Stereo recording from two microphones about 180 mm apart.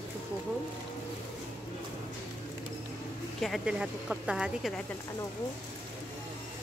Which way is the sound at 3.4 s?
Centre (ahead or behind).